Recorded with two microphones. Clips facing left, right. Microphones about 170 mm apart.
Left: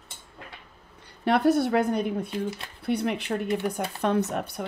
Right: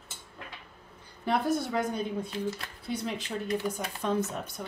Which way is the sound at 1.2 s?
70° left (ahead or behind).